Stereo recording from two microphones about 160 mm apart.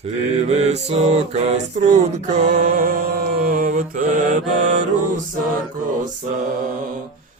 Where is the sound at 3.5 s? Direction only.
55° right (ahead or behind).